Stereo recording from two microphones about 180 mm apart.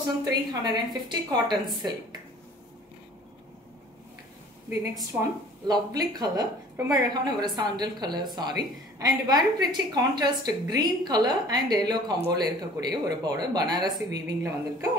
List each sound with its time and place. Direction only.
0.2 s a woman's voice: 20° right (ahead or behind)
5.7 s a woman's voice: 20° right (ahead or behind)